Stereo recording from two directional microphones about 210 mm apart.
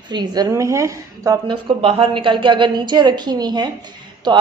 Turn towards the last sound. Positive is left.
turn(degrees=-20)  # may be behind; listen again after turning